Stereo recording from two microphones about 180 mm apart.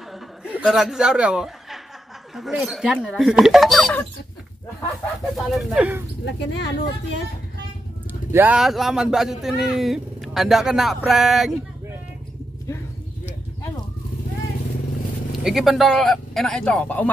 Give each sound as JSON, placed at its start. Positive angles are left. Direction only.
{"t": 0.1, "sound": "chuckle", "side_deg": -5}
{"t": 2.3, "sound": "speech", "side_deg": 0}
{"t": 5.3, "sound": "speech", "side_deg": 0}
{"t": 6.2, "sound": "speech", "side_deg": 75}
{"t": 8.1, "sound": "speech", "side_deg": -10}
{"t": 15.4, "sound": "speech", "side_deg": 0}